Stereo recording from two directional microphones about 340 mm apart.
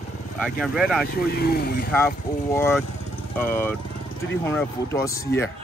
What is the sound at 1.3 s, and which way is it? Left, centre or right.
Speech, left.